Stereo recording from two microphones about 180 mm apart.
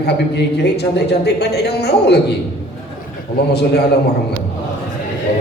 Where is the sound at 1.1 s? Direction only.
65° left (ahead or behind).